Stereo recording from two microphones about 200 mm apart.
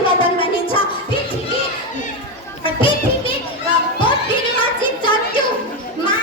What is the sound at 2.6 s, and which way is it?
Music, 25° left (ahead or behind).